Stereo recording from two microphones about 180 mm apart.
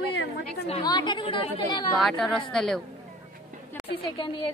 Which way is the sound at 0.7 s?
25° left (ahead or behind).